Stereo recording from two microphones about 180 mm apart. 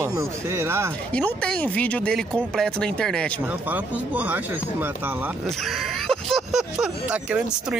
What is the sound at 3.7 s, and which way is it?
Speech, 10° right (ahead or behind).